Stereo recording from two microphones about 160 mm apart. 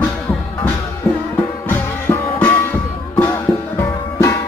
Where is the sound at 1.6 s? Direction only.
10° left (ahead or behind).